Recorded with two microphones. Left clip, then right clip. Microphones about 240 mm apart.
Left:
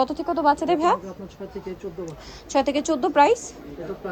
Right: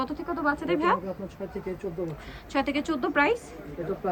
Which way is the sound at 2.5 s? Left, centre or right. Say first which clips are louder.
Left 6 dB; left.